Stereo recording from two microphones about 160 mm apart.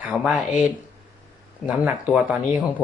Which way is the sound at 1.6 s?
5° right (ahead or behind).